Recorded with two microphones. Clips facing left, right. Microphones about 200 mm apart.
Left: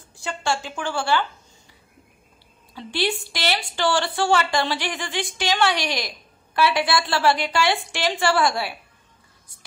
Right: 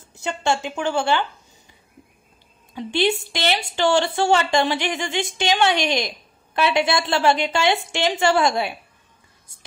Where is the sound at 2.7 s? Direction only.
20° right (ahead or behind).